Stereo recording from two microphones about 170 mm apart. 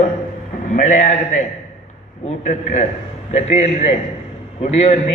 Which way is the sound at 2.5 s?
45° left (ahead or behind).